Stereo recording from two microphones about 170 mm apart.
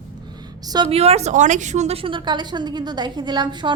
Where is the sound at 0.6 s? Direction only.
25° right (ahead or behind).